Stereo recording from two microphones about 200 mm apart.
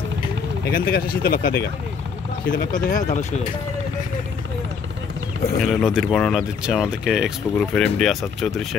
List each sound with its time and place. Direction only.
0.7 s speech: 50° left (ahead or behind)
2.5 s speech: 45° left (ahead or behind)
5.6 s speech: centre (ahead or behind)